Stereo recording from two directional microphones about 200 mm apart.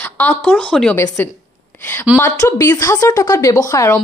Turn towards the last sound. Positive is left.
turn(degrees=15)  # may be behind; listen again after turning